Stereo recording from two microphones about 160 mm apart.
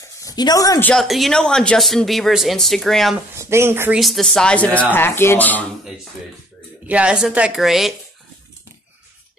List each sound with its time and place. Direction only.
0.0 s a sound: 20° left (ahead or behind)
0.7 s speech: 10° left (ahead or behind)
1.0 s speech: centre (ahead or behind)
3.3 s speech: 15° right (ahead or behind)
4.0 s speech: centre (ahead or behind)
6.9 s speech: 5° right (ahead or behind)